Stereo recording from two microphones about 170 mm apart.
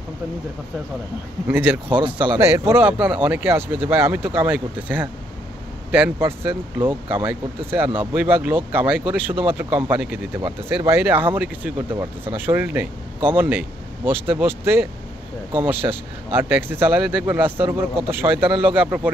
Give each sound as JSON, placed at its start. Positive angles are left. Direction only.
{"t": 1.5, "sound": "speech", "side_deg": -10}
{"t": 1.9, "sound": "speech", "side_deg": -30}
{"t": 2.3, "sound": "speech", "side_deg": -15}
{"t": 10.4, "sound": "speech", "side_deg": -25}
{"t": 11.0, "sound": "speech", "side_deg": -10}